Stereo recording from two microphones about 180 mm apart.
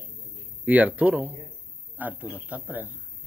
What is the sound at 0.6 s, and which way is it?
Speech, 10° right (ahead or behind).